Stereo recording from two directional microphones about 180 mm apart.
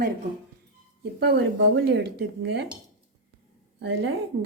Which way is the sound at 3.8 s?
75° right (ahead or behind).